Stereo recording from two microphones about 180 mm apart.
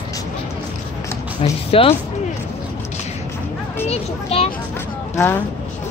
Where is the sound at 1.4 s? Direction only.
35° left (ahead or behind).